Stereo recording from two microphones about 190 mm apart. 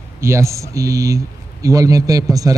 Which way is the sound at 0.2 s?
15° right (ahead or behind).